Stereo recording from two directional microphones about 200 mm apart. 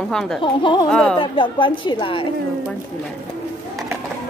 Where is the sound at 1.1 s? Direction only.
25° left (ahead or behind).